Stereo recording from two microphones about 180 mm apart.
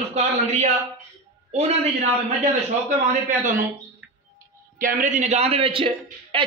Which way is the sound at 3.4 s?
45° right (ahead or behind).